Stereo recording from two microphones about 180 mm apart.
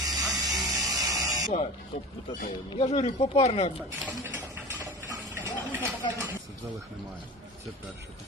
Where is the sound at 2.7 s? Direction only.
30° left (ahead or behind).